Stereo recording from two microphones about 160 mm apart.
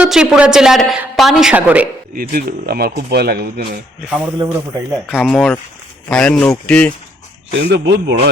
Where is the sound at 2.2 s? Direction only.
75° right (ahead or behind).